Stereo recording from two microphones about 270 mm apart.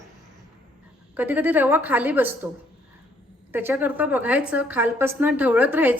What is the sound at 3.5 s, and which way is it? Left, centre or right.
A woman's voice, centre.